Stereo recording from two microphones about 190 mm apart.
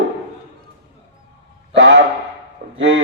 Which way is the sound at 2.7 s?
75° right (ahead or behind).